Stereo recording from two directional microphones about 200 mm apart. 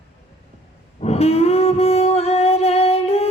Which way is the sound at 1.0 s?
30° left (ahead or behind).